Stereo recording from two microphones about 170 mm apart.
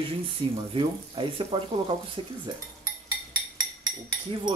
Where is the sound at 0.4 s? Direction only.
30° right (ahead or behind).